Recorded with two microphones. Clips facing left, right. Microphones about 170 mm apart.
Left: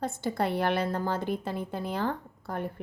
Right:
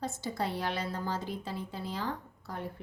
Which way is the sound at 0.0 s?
60° left (ahead or behind).